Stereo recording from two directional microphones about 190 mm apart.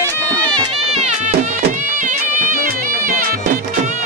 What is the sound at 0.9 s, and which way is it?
Music, 35° right (ahead or behind).